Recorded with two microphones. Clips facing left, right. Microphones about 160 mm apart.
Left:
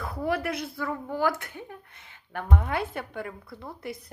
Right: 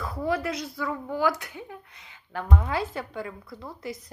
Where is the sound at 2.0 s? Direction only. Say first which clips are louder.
Right 2 dB; 55° left (ahead or behind).